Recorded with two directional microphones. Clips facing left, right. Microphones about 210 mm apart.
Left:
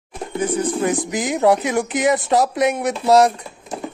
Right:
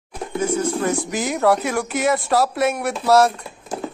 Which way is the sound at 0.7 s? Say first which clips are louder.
Left 1 dB; 15° left (ahead or behind).